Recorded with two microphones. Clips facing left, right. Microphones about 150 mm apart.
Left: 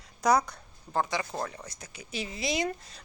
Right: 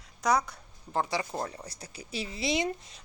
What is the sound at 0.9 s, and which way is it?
Speech, 30° right (ahead or behind).